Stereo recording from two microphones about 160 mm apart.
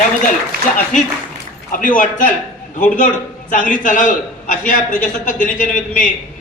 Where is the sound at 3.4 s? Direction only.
55° left (ahead or behind).